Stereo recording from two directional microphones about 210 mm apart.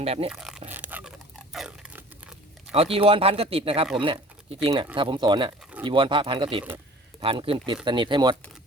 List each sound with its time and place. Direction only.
0.0 s speech: 30° right (ahead or behind)
0.3 s speech: 5° right (ahead or behind)
0.7 s a sound: 10° right (ahead or behind)
1.5 s biting: 5° right (ahead or behind)
2.7 s speech: 25° right (ahead or behind)